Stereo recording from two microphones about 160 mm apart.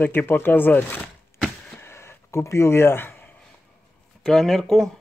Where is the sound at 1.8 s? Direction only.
15° left (ahead or behind).